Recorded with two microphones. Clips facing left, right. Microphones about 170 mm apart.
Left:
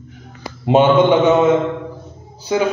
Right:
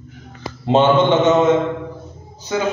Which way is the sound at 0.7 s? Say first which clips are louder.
Left 2 dB; 10° left (ahead or behind).